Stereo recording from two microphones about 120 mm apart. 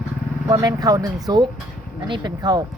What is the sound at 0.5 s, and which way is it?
Speech, 30° right (ahead or behind).